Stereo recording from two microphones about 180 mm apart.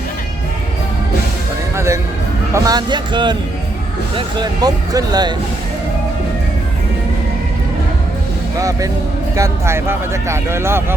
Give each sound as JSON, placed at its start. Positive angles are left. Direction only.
{"t": 1.7, "sound": "speech", "side_deg": -15}
{"t": 8.5, "sound": "speech", "side_deg": -20}